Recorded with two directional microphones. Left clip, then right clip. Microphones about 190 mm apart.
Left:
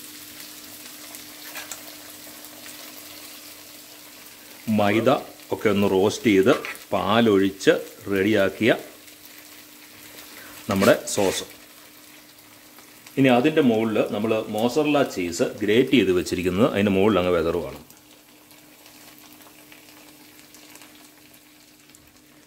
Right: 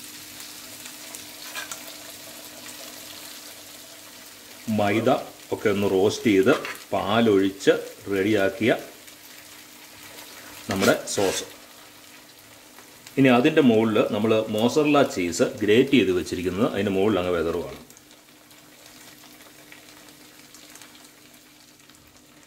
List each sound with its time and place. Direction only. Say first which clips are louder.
4.7 s speech: left 2 dB; 25° left (ahead or behind)
10.9 s speech: left 3 dB; 30° left (ahead or behind)
13.1 s speech: even; 10° left (ahead or behind)
15.9 s speech: left 1 dB; 25° left (ahead or behind)